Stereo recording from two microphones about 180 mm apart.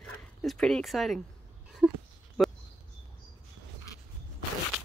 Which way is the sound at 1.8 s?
5° right (ahead or behind).